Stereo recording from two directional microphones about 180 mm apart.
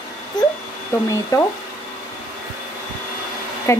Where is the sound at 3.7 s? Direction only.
15° left (ahead or behind).